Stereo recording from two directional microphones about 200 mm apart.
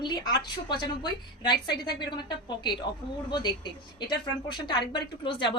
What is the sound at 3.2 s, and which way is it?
Speech, 20° left (ahead or behind).